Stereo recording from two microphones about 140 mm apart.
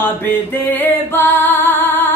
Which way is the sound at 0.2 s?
15° left (ahead or behind).